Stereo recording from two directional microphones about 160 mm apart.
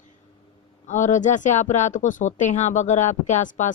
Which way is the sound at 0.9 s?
50° left (ahead or behind).